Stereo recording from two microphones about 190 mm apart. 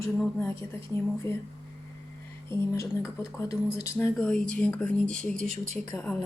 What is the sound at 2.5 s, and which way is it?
Speech, 15° left (ahead or behind).